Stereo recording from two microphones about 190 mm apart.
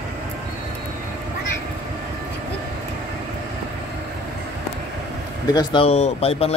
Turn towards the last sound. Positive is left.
turn(degrees=30)  # may be behind; listen again after turning